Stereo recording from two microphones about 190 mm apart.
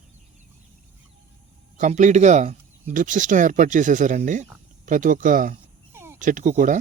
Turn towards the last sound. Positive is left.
turn(degrees=-40)  # may be behind; listen again after turning